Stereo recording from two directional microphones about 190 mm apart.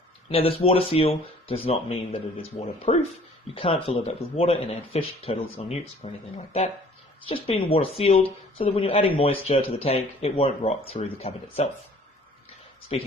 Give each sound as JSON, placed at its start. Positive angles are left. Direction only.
{"t": 0.3, "sound": "speech", "side_deg": 30}
{"t": 12.9, "sound": "speech", "side_deg": 30}